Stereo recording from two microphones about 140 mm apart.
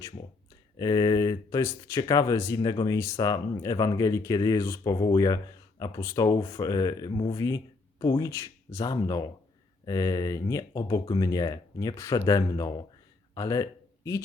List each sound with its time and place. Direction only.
0.8 s speech: 25° left (ahead or behind)